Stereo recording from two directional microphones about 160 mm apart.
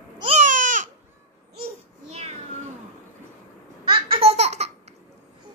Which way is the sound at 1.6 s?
40° right (ahead or behind).